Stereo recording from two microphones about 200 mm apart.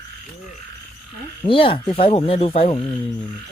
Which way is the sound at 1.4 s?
25° left (ahead or behind).